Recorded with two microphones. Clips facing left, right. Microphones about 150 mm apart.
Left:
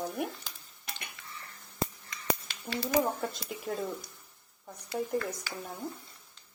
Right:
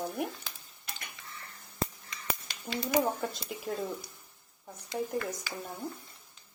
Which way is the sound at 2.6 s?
15° right (ahead or behind).